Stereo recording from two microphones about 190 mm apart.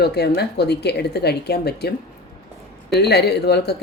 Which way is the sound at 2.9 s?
60° left (ahead or behind).